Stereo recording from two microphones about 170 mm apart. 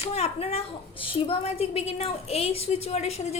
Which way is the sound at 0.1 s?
35° left (ahead or behind).